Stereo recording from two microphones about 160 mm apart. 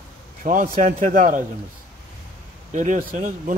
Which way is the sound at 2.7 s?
50° right (ahead or behind).